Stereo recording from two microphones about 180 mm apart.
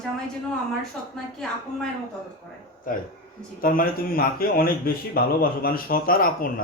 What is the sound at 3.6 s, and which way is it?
A man's voice, 50° left (ahead or behind).